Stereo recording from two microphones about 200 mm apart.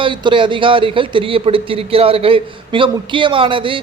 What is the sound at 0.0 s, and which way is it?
Speech, 25° right (ahead or behind).